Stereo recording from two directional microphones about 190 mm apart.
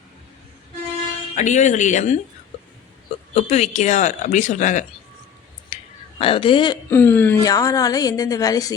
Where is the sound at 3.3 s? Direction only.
35° left (ahead or behind).